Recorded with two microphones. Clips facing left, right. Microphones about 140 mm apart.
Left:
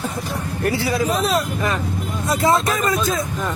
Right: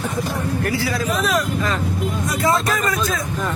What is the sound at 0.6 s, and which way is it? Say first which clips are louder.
Speech: left 6 dB; 25° left (ahead or behind).